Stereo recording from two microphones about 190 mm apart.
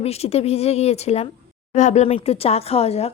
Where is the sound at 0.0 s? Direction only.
35° left (ahead or behind).